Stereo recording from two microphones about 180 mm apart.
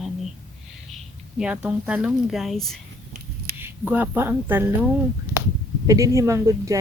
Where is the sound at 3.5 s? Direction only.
10° right (ahead or behind).